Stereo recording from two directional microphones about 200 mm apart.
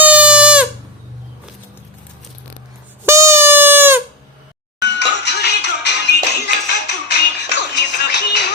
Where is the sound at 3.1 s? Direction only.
15° right (ahead or behind).